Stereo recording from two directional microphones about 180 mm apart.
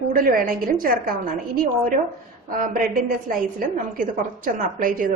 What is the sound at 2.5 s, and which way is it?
A woman's voice, 50° right (ahead or behind).